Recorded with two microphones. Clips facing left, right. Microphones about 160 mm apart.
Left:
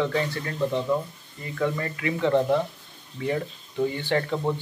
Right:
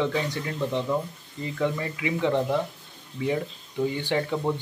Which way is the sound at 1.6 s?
10° right (ahead or behind).